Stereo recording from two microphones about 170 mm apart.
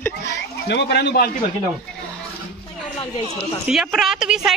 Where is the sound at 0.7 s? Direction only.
85° left.